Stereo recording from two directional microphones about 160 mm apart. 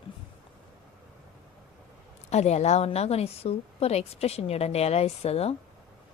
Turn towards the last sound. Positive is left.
turn(degrees=40)  # may be behind; listen again after turning